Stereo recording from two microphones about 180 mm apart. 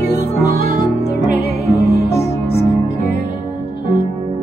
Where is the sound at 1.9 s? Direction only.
65° left (ahead or behind).